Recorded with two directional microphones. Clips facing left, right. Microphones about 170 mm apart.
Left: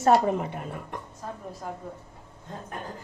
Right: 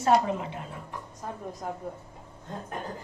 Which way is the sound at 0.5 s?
60° left (ahead or behind).